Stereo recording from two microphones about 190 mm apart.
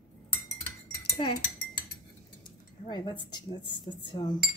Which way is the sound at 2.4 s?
25° left (ahead or behind).